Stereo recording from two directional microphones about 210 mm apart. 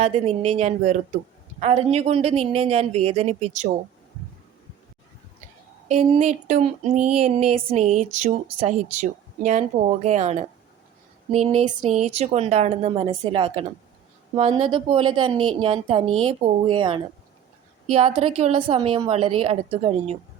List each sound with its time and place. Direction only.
0.0 s speech: 30° right (ahead or behind)
5.9 s speech: 30° right (ahead or behind)
11.5 s a sound: 90° right
11.9 s speech: 35° right (ahead or behind)